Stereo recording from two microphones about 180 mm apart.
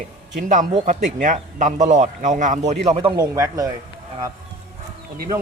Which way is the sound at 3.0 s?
20° right (ahead or behind).